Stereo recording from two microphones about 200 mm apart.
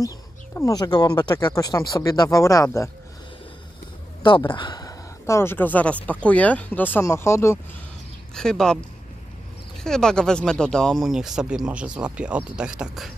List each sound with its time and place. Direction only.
0.6 s speech: 15° left (ahead or behind)
4.5 s speech: 25° left (ahead or behind)
8.4 s speech: 5° left (ahead or behind)
9.8 s speech: 5° left (ahead or behind)